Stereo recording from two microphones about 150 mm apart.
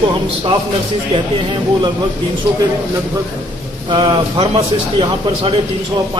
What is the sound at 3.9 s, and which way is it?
Speech, 35° right (ahead or behind).